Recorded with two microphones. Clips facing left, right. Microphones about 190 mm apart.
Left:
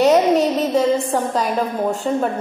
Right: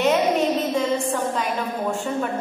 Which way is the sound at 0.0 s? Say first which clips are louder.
Left 5 dB; 35° left (ahead or behind).